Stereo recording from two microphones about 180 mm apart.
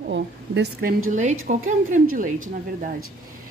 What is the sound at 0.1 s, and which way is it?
Speech, 65° right (ahead or behind).